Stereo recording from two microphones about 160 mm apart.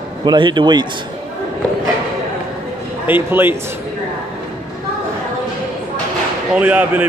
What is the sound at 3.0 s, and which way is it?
Speech, 15° right (ahead or behind).